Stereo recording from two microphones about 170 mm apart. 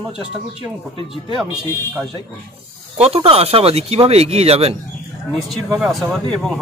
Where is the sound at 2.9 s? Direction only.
35° right (ahead or behind).